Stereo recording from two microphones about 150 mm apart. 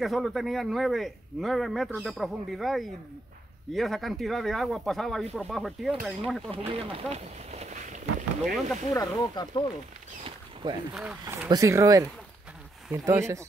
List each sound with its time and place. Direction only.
0.0 s speech: centre (ahead or behind)
6.5 s speech: 40° right (ahead or behind)
8.9 s speech: 25° left (ahead or behind)
10.2 s rodents: 30° right (ahead or behind)
11.0 s speech: 10° right (ahead or behind)
11.4 s speech: 25° right (ahead or behind)